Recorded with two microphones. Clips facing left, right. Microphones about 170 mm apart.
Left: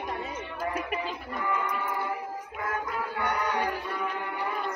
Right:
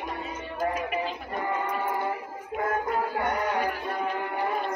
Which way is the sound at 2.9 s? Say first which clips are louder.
Right 4 dB; 35° right (ahead or behind).